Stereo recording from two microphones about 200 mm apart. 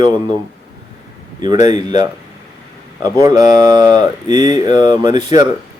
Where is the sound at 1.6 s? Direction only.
20° right (ahead or behind).